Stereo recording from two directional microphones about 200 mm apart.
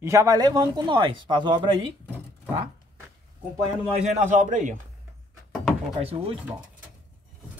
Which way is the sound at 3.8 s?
35° right (ahead or behind).